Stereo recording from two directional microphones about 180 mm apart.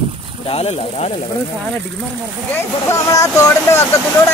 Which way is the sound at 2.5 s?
15° left (ahead or behind).